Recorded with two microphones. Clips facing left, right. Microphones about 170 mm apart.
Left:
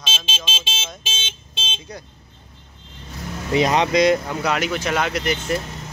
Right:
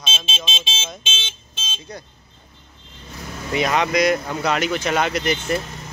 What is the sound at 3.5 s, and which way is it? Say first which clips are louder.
Speech: left 2 dB; 30° left (ahead or behind).